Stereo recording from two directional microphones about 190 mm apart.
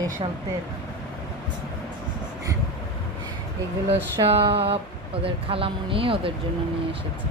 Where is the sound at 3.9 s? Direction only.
30° right (ahead or behind).